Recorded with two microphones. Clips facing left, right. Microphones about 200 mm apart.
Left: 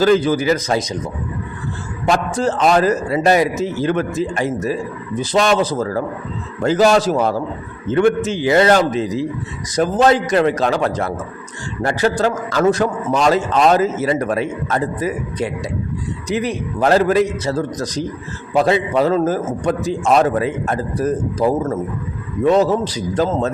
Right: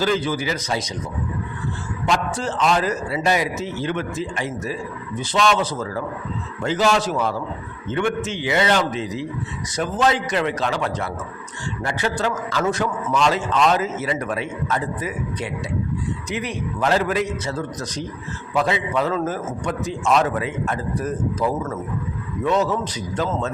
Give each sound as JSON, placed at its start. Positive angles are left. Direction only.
{"t": 0.0, "sound": "a man's voice", "side_deg": 45}
{"t": 2.0, "sound": "a man's voice", "side_deg": 40}